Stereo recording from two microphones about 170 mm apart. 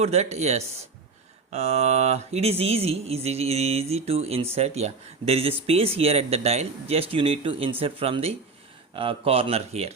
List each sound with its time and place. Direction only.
0.0 s mantra: 40° right (ahead or behind)